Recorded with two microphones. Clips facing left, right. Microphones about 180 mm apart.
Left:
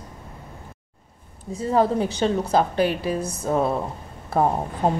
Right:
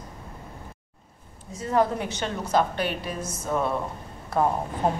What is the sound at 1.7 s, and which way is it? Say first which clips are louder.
A woman's voice: left 3 dB; 30° left (ahead or behind).